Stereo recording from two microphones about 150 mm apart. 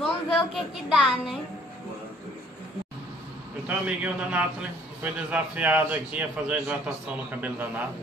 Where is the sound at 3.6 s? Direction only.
10° right (ahead or behind).